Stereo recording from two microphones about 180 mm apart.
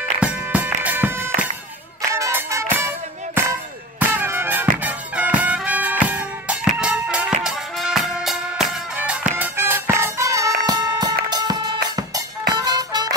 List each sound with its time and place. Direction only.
0.2 s music: 10° right (ahead or behind)
4.0 s music: 10° right (ahead or behind)